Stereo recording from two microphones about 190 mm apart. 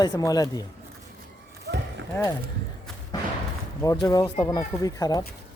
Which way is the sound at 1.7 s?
65° right (ahead or behind).